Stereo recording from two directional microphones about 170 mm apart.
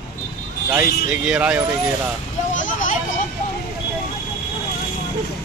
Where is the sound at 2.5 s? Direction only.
50° left (ahead or behind).